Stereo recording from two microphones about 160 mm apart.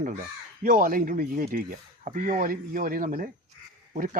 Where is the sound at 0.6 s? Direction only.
60° right (ahead or behind).